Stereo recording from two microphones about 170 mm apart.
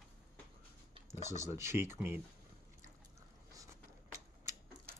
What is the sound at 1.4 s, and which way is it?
Speech, 15° right (ahead or behind).